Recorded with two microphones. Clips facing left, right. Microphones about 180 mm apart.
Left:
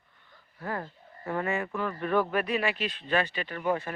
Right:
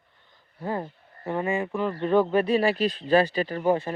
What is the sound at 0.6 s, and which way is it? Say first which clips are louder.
Speech: right 5 dB; 20° right (ahead or behind).